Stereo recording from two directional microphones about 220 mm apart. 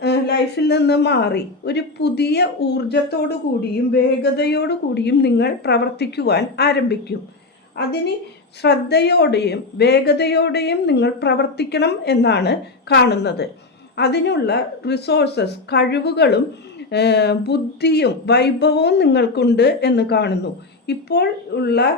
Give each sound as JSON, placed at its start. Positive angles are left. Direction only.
{"t": 0.0, "sound": "speech", "side_deg": 50}